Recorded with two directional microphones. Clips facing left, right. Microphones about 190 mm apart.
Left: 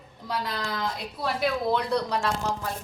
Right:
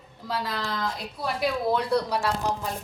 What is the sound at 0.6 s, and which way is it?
A woman's voice, centre (ahead or behind).